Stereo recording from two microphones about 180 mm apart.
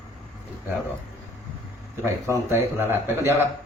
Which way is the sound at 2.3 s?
15° right (ahead or behind).